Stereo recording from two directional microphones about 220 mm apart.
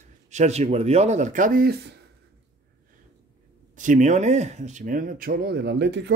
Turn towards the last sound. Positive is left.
turn(degrees=-50)  # may be behind; listen again after turning